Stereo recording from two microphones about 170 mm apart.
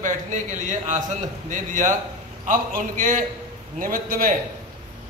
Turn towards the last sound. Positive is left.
turn(degrees=-55)  # may be behind; listen again after turning